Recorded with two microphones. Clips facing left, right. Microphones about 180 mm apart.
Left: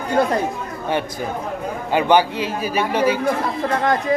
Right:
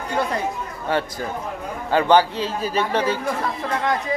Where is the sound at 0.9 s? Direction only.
15° left (ahead or behind).